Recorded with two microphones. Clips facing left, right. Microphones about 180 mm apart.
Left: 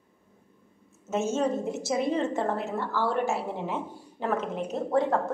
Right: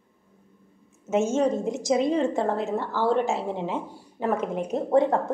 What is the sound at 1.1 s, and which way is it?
A woman's voice, 15° right (ahead or behind).